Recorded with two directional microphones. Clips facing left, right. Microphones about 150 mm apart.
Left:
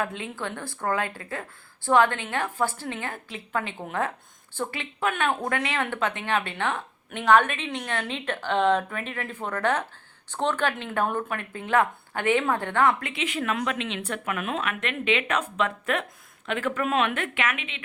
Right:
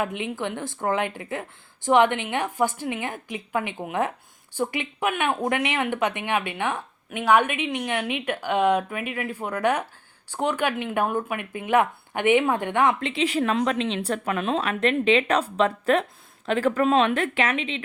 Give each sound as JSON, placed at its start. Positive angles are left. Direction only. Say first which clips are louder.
{"t": 0.0, "sound": "speech", "louder": "right 3 dB", "side_deg": -15}